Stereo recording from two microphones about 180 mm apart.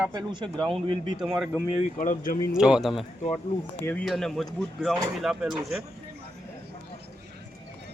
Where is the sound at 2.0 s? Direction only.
45° left (ahead or behind).